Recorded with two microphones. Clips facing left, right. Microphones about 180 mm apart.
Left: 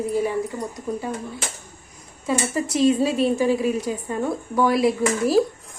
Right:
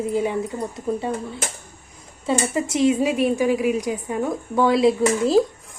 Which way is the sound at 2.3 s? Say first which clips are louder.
Right 1 dB; 20° right (ahead or behind).